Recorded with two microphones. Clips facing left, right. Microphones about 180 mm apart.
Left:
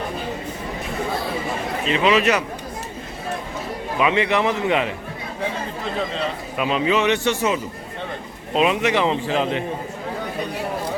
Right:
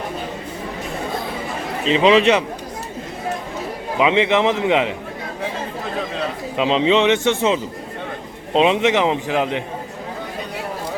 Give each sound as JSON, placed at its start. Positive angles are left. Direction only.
{"t": 2.0, "sound": "a man's voice", "side_deg": -30}
{"t": 3.9, "sound": "a man's voice", "side_deg": -20}
{"t": 6.6, "sound": "a man's voice", "side_deg": -25}